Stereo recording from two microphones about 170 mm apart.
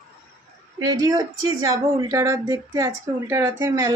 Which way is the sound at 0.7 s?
20° right (ahead or behind).